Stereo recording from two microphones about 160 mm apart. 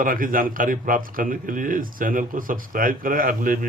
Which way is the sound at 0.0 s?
60° right (ahead or behind).